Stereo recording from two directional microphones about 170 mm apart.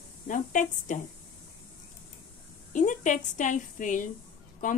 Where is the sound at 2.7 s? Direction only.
50° left (ahead or behind).